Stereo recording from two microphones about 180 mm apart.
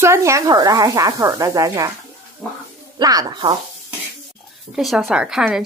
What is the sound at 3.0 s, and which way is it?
Speech, 20° right (ahead or behind).